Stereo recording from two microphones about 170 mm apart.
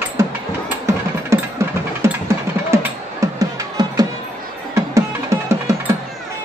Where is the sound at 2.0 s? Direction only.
15° right (ahead or behind).